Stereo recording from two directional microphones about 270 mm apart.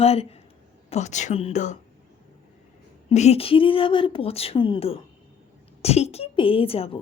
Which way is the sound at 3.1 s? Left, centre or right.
Left.